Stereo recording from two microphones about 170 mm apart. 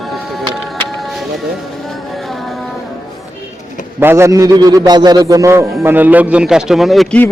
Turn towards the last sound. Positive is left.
turn(degrees=0)  # may be behind; listen again after turning